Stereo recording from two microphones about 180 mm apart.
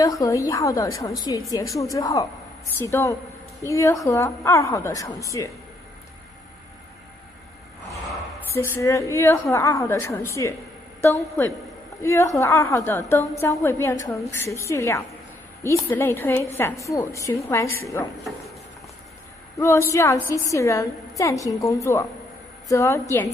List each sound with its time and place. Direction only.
0.0 s a woman's voice: 20° left (ahead or behind)
8.5 s a woman's voice: 15° left (ahead or behind)
18.1 s speech: centre (ahead or behind)
19.6 s a woman's voice: 15° left (ahead or behind)